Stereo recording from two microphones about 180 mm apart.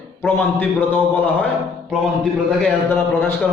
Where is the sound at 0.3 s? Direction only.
10° left (ahead or behind).